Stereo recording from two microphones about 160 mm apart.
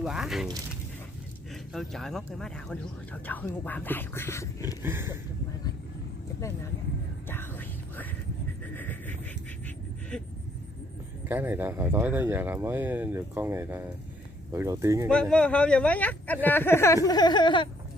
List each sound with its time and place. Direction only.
0.0 s speech: centre (ahead or behind)
1.5 s speech: centre (ahead or behind); by 4.5 s 15° left (ahead or behind)
4.8 s speech: 15° right (ahead or behind)
7.2 s whispering: 15° left (ahead or behind)
8.7 s a sound: 10° left (ahead or behind)
11.2 s speech: 10° right (ahead or behind)
15.0 s speech: 5° left (ahead or behind); by 17.6 s 30° left (ahead or behind)